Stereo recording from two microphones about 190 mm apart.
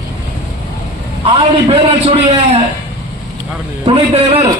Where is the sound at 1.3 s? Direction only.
30° right (ahead or behind).